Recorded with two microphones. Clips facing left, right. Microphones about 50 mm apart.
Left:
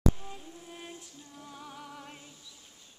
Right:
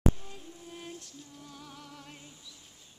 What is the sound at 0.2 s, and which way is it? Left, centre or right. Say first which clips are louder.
Music: left 2 dB; centre.